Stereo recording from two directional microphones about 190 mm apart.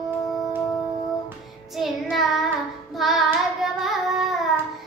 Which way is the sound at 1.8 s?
Centre (ahead or behind).